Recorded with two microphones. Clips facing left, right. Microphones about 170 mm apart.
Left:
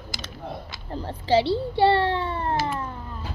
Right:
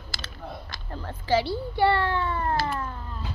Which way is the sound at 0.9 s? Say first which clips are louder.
Left 3 dB; 30° left (ahead or behind).